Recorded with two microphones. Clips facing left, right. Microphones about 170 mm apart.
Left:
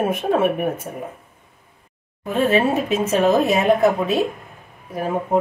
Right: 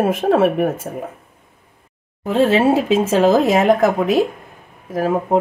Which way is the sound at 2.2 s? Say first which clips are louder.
Right 4 dB; 90° right.